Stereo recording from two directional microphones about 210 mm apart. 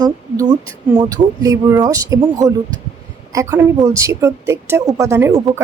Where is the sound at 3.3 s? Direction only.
15° right (ahead or behind).